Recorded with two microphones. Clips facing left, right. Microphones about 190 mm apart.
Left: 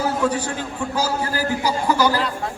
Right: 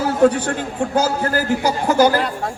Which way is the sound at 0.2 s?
55° right (ahead or behind).